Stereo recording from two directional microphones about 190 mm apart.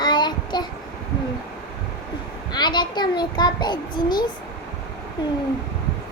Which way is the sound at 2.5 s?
20° left (ahead or behind).